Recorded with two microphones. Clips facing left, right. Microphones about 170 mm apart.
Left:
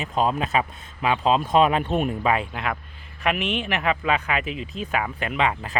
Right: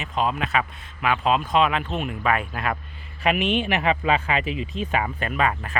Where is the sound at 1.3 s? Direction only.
35° left (ahead or behind).